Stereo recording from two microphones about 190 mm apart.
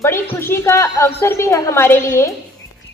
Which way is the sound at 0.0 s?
15° left (ahead or behind).